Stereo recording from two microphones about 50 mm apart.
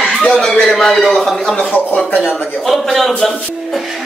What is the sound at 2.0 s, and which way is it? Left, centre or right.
Speech, left.